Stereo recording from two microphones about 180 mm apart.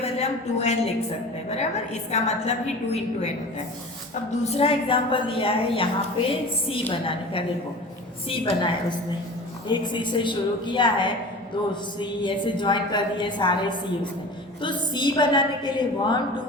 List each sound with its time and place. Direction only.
0.0 s a woman's voice: 35° left (ahead or behind)
6.9 s a woman's voice: 30° left (ahead or behind)